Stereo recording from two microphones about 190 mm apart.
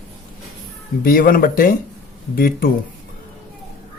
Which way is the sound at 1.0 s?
50° left (ahead or behind).